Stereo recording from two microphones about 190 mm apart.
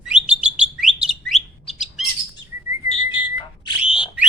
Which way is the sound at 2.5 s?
15° right (ahead or behind).